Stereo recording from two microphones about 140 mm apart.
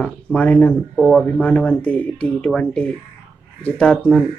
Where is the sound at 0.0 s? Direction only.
10° left (ahead or behind).